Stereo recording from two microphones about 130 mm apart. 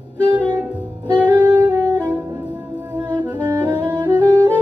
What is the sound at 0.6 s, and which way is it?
Music, 10° right (ahead or behind).